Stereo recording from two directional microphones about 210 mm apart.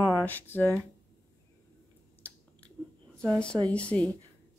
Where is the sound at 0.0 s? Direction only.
10° left (ahead or behind).